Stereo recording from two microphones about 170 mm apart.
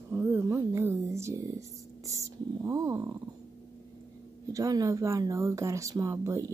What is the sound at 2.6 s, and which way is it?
Speech, 20° right (ahead or behind).